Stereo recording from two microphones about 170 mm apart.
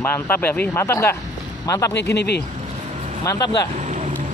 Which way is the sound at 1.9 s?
85° left.